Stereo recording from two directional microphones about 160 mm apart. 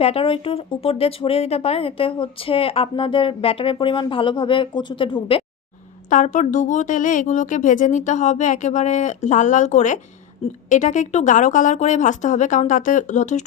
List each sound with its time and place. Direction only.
0.0 s speech: 35° left (ahead or behind)
6.1 s speech: 50° left (ahead or behind)